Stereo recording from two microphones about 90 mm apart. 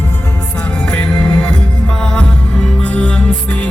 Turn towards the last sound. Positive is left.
turn(degrees=15)  # may be behind; listen again after turning